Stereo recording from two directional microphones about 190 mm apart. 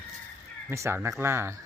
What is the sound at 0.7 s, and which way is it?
Speech, 15° right (ahead or behind).